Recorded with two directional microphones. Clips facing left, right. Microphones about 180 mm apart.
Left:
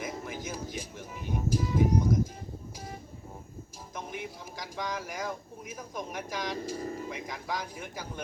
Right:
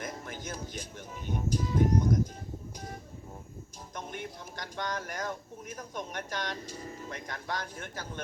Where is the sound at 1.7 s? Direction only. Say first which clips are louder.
Even; 5° left (ahead or behind).